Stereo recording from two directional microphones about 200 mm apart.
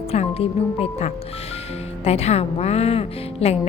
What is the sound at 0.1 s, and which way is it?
A woman's voice, 30° left (ahead or behind).